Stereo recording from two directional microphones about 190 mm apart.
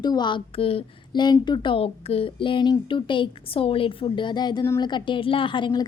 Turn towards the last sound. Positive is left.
turn(degrees=25)  # may be behind; listen again after turning